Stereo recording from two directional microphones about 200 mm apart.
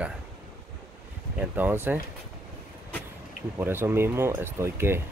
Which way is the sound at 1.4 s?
10° right (ahead or behind).